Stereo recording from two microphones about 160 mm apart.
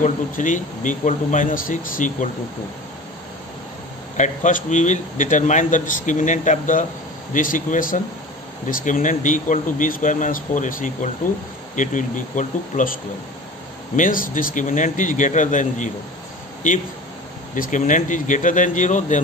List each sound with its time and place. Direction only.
0.0 s speech: 50° left (ahead or behind)
4.2 s speech: 50° left (ahead or behind)
13.9 s speech: 60° left (ahead or behind)
17.6 s speech: 50° left (ahead or behind)